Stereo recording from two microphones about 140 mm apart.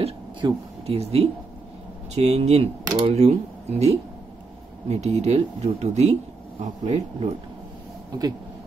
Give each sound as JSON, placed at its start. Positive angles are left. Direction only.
{"t": 0.0, "sound": "speech", "side_deg": -40}